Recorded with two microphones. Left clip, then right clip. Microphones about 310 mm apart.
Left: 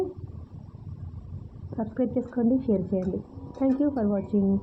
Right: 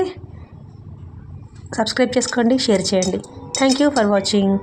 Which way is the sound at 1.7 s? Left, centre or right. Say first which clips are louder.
Right 11 dB; right.